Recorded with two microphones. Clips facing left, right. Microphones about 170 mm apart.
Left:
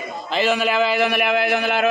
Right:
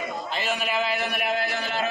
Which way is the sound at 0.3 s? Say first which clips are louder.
Left 10 dB; 90° left.